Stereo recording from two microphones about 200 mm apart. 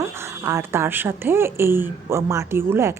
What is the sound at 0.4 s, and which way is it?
Speech, 10° right (ahead or behind).